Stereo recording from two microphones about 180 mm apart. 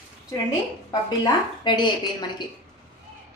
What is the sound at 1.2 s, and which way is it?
A woman's voice, 25° left (ahead or behind).